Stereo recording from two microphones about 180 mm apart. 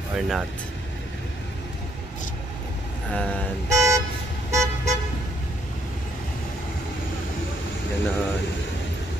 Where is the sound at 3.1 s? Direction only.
5° left (ahead or behind).